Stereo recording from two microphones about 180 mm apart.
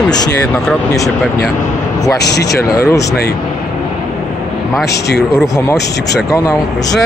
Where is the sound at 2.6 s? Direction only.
20° left (ahead or behind).